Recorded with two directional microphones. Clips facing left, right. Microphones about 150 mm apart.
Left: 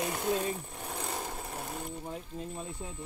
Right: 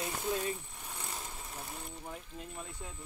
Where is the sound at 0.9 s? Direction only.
70° left (ahead or behind).